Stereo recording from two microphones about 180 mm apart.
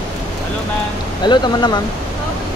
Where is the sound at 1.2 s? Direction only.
25° left (ahead or behind).